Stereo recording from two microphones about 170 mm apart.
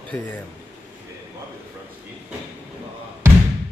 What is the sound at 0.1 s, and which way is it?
Speech, 15° left (ahead or behind).